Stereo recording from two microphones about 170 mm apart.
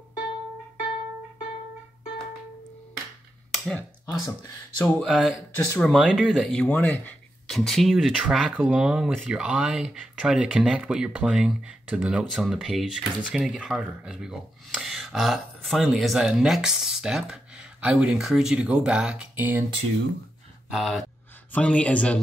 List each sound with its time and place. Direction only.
3.5 s finger snapping: 5° left (ahead or behind)
4.1 s speech: 20° left (ahead or behind)
4.7 s a man's voice: 5° left (ahead or behind)
5.1 s speech: 5° right (ahead or behind)
5.7 s speech: 5° left (ahead or behind); by 19.6 s 10° right (ahead or behind)
20.7 s a man's voice: centre (ahead or behind)